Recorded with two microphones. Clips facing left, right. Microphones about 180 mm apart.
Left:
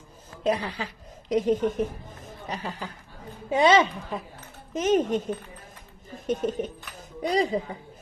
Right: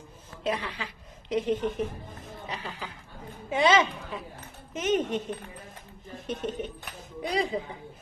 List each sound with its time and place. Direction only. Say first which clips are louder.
0.4 s a woman's voice: left 5 dB; 40° left (ahead or behind)
6.2 s a woman's voice: left 6 dB; 40° left (ahead or behind)